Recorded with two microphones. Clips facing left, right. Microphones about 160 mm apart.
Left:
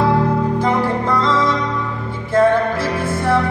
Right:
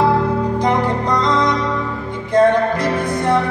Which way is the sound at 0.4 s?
15° right (ahead or behind).